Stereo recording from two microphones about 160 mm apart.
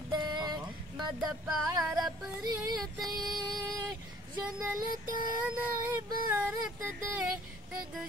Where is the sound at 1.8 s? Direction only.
25° right (ahead or behind).